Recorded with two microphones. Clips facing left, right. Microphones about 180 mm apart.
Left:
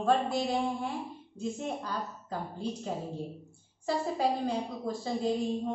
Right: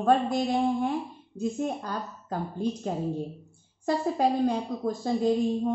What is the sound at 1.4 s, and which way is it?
A woman's voice, 50° right (ahead or behind).